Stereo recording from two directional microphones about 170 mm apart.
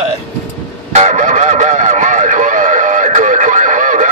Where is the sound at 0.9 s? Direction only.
45° right (ahead or behind).